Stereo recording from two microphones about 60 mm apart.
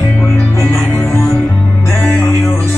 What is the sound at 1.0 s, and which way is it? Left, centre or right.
Music, left.